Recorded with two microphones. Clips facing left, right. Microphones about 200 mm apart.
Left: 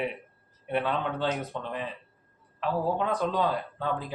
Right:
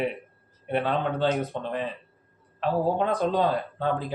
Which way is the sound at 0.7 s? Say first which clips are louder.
Right 3 dB; 30° right (ahead or behind).